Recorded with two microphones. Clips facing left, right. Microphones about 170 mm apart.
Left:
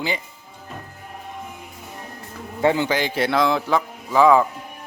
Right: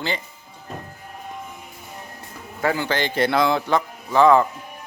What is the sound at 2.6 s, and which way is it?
Speech, 20° left (ahead or behind).